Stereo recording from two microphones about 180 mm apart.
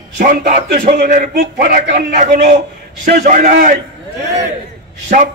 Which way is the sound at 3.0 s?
45° right (ahead or behind).